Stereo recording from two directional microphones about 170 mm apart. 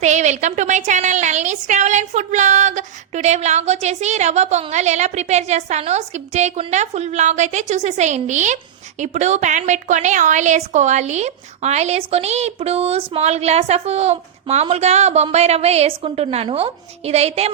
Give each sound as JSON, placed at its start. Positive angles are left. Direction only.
{"t": 0.0, "sound": "a woman's voice", "side_deg": -45}